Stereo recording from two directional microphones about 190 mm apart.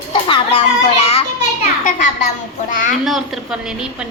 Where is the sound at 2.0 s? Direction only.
40° left (ahead or behind).